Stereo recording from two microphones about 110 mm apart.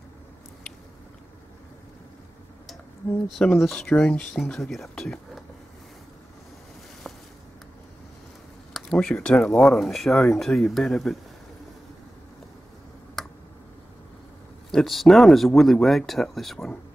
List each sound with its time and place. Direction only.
3.3 s speech: 5° left (ahead or behind)
8.7 s speech: 10° left (ahead or behind)
13.2 s a sound: centre (ahead or behind)
14.7 s speech: centre (ahead or behind)